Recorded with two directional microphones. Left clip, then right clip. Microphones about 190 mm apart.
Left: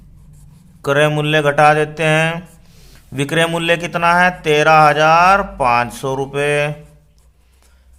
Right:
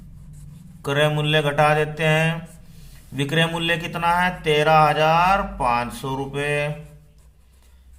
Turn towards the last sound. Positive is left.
turn(degrees=40)  # may be behind; listen again after turning